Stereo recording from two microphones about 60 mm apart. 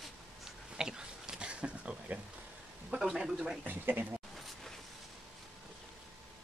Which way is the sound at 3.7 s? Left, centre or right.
Right.